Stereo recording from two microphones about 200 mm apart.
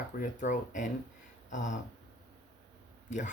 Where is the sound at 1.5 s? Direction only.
40° left (ahead or behind).